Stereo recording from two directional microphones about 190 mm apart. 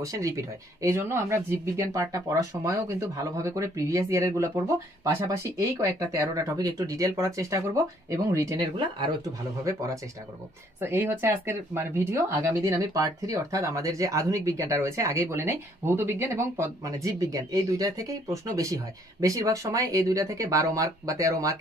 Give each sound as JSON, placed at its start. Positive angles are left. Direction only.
{"t": 0.0, "sound": "speech", "side_deg": -15}
{"t": 10.8, "sound": "speech", "side_deg": -10}